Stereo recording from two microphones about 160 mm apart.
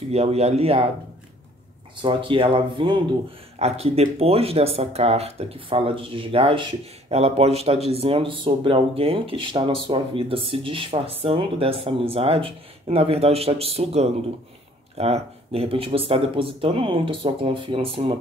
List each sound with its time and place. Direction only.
0.1 s speech: 40° right (ahead or behind)
2.0 s speech: 30° right (ahead or behind)